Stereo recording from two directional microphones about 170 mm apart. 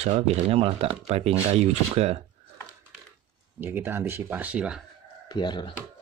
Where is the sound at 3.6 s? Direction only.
10° right (ahead or behind).